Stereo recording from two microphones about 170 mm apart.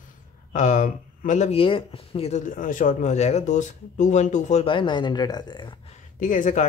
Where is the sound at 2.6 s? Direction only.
50° left (ahead or behind).